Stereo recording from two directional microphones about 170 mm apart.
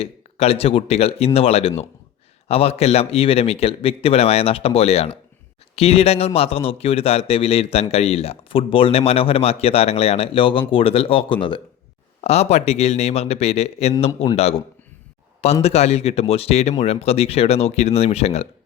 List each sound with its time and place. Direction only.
0.0 s speech: 35° left (ahead or behind)
15.6 s speech: 40° left (ahead or behind)